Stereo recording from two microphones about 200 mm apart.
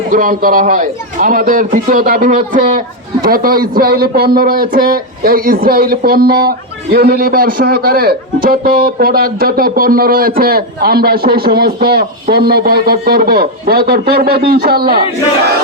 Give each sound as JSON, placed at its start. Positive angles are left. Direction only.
{"t": 0.1, "sound": "a man's voice", "side_deg": -45}